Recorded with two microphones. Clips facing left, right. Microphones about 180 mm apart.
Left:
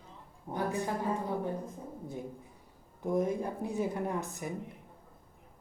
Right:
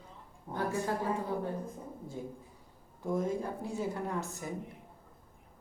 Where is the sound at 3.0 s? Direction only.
15° left (ahead or behind).